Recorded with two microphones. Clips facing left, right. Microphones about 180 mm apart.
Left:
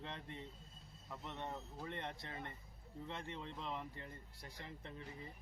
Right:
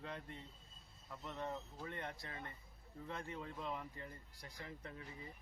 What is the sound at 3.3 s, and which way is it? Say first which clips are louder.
Speech: right 1 dB; 5° right (ahead or behind).